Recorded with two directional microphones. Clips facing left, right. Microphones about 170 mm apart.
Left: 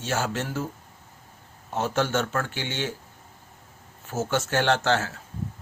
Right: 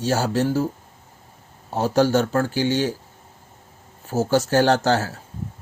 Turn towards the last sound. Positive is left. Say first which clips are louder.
# right 4 dB
turn(degrees=-35)  # may be behind; listen again after turning